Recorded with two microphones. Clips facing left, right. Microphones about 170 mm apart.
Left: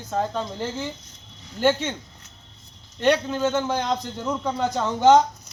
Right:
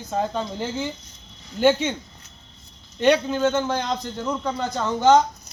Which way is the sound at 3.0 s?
Centre (ahead or behind).